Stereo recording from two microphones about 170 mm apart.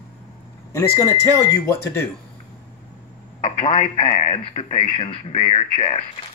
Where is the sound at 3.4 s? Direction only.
35° left (ahead or behind).